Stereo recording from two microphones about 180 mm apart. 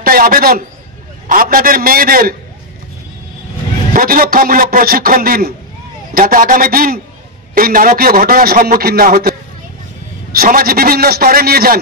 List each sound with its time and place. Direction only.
0.0 s a man's voice: 55° right (ahead or behind)
3.9 s a man's voice: 55° right (ahead or behind)
10.3 s a man's voice: 55° right (ahead or behind)